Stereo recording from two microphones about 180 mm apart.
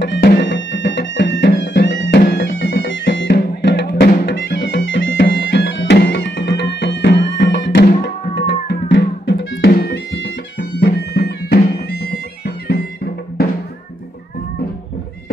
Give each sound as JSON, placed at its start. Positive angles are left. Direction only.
{"t": 0.0, "sound": "music", "side_deg": 70}
{"t": 3.3, "sound": "music", "side_deg": 65}